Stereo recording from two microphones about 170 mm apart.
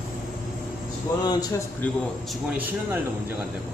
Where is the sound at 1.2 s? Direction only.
20° left (ahead or behind).